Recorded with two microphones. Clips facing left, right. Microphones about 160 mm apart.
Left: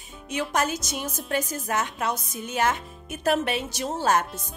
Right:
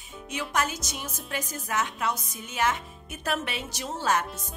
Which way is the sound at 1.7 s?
45° left (ahead or behind).